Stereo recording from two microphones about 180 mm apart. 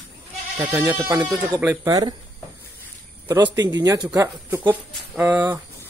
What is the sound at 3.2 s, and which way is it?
Speech, 20° right (ahead or behind).